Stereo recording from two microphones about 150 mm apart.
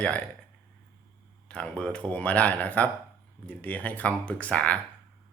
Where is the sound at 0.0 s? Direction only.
10° left (ahead or behind).